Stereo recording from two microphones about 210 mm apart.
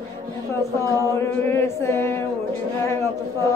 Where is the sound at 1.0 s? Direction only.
15° left (ahead or behind).